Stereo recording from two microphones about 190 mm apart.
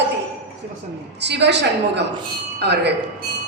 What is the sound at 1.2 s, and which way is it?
A woman's voice, 65° right (ahead or behind).